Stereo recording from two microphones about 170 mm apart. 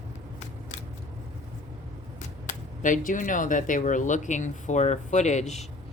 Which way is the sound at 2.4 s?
50° left (ahead or behind).